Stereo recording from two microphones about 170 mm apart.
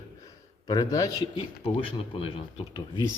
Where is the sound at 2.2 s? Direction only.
30° left (ahead or behind).